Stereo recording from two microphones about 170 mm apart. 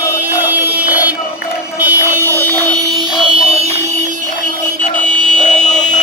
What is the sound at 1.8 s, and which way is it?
Vehicle, 10° right (ahead or behind).